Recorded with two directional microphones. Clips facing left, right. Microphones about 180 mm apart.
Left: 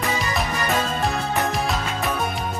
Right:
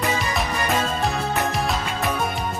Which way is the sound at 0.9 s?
Centre (ahead or behind).